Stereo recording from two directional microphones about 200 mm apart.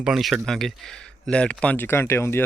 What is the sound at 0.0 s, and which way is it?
Speech, centre (ahead or behind).